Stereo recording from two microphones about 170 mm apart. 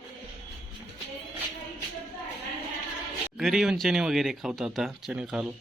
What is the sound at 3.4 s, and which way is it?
Speech, centre (ahead or behind).